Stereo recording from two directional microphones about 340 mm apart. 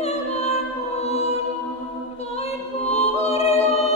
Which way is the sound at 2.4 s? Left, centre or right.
Centre.